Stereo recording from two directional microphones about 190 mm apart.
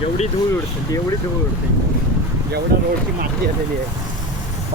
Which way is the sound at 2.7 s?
55° right (ahead or behind).